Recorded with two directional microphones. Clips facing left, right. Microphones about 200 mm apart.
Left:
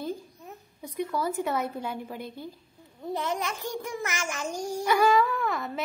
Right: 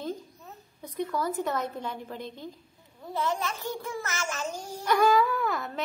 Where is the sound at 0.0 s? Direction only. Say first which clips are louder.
Left 1 dB; 10° left (ahead or behind).